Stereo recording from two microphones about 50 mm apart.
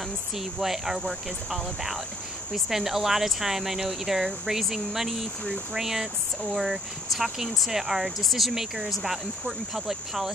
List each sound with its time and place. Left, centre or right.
0.4 s speech: centre